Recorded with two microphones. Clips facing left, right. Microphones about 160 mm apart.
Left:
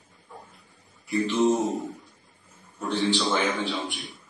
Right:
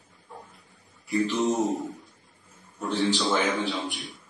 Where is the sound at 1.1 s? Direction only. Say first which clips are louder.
Left 2 dB; centre (ahead or behind).